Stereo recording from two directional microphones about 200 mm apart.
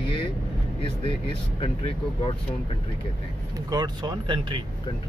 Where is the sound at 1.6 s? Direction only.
30° left (ahead or behind).